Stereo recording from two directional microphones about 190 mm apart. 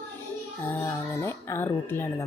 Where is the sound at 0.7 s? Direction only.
15° left (ahead or behind).